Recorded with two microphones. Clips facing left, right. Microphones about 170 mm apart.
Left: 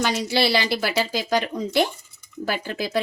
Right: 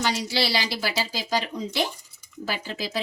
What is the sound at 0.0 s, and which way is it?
Speech, 55° left (ahead or behind).